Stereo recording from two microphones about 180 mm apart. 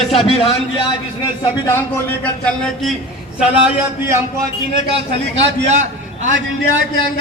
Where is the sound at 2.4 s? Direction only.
Centre (ahead or behind).